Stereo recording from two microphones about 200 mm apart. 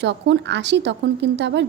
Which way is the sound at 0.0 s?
60° right (ahead or behind).